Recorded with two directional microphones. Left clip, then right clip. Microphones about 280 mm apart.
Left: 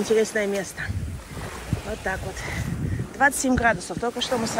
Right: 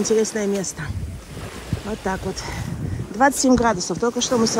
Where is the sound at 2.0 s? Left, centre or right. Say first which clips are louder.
Right 4 dB; centre.